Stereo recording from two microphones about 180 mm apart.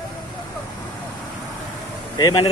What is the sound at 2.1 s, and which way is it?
Speech, 25° left (ahead or behind).